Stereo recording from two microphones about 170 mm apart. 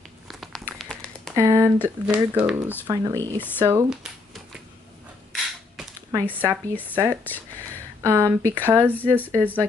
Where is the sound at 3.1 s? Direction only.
10° left (ahead or behind).